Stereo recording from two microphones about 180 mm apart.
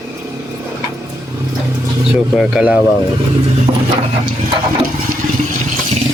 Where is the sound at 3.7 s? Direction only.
35° right (ahead or behind).